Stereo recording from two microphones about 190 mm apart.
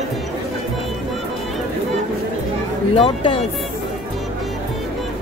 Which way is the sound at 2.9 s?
25° left (ahead or behind).